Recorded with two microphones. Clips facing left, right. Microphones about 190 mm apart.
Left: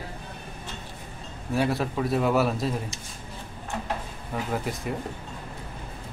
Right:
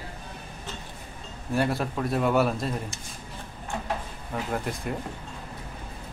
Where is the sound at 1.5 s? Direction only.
Centre (ahead or behind).